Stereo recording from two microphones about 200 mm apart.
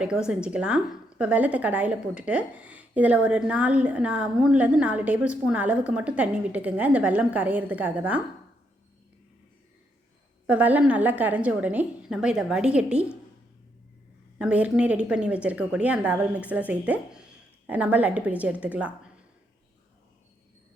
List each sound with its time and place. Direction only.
0.0 s a woman's voice: 5° right (ahead or behind)
10.4 s a woman's voice: 5° right (ahead or behind)
14.3 s a woman's voice: 5° right (ahead or behind)